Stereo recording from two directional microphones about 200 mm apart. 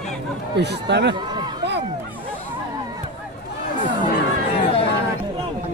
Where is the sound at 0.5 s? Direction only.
55° right (ahead or behind).